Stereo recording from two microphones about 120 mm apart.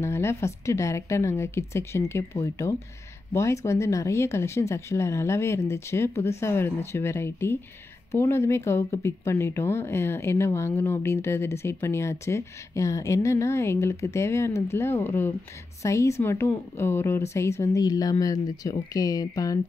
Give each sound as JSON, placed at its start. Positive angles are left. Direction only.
{"t": 0.0, "sound": "speech", "side_deg": 20}